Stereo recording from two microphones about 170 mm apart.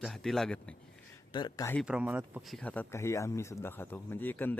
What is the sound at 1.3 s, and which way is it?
Speech, 25° left (ahead or behind).